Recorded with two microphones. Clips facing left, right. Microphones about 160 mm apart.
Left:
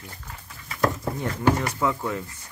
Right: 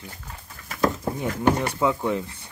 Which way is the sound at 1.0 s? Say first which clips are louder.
Right 1 dB; 25° right (ahead or behind).